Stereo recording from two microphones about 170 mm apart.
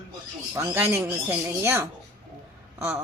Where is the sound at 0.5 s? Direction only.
15° right (ahead or behind).